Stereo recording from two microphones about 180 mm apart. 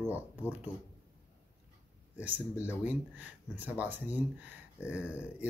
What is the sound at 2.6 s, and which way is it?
Speech, 10° right (ahead or behind).